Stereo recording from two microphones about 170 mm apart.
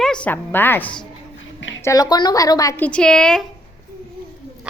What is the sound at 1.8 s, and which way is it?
A woman's voice, 20° left (ahead or behind).